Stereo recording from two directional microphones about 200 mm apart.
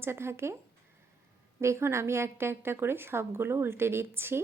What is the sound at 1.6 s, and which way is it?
A woman's voice, 15° right (ahead or behind).